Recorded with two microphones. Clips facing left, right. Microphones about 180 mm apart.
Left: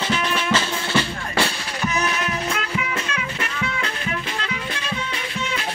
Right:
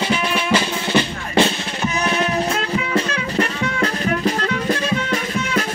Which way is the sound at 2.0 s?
30° right (ahead or behind).